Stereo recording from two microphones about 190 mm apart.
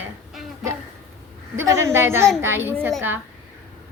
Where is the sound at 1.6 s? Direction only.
15° right (ahead or behind).